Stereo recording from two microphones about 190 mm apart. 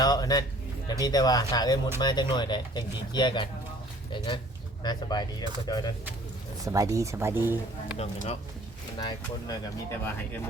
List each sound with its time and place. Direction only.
0.0 s speech: 20° left (ahead or behind)
4.8 s speech: 20° left (ahead or behind)
6.7 s speech: 15° right (ahead or behind)
7.9 s speech: 35° left (ahead or behind)
9.0 s speech: 20° left (ahead or behind)